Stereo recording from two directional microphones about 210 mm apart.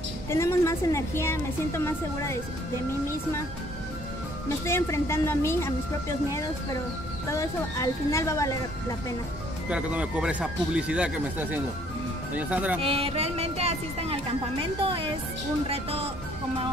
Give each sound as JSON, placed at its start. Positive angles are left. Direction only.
{"t": 0.3, "sound": "a woman's voice", "side_deg": 15}
{"t": 4.5, "sound": "a woman's voice", "side_deg": 15}
{"t": 7.2, "sound": "a woman's voice", "side_deg": 15}
{"t": 9.7, "sound": "speech", "side_deg": -5}
{"t": 12.8, "sound": "speech", "side_deg": -25}